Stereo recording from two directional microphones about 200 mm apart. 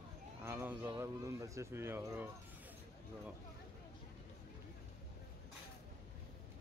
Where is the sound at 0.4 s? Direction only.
10° right (ahead or behind).